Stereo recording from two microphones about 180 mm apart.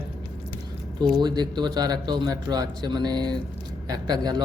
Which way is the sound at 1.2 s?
25° right (ahead or behind).